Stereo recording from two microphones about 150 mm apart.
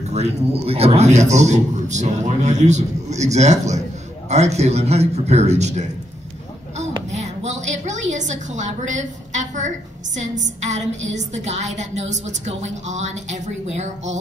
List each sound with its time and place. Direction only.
0.1 s a woman's voice: 45° right (ahead or behind)
7.1 s a sound: 50° right (ahead or behind)
10.1 s a woman's voice: 55° right (ahead or behind)